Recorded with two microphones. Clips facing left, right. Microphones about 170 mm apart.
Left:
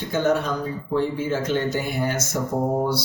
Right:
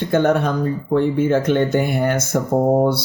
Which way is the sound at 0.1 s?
60° right (ahead or behind).